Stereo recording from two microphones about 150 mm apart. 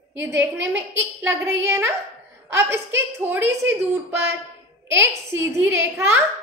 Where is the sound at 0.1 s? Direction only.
15° right (ahead or behind).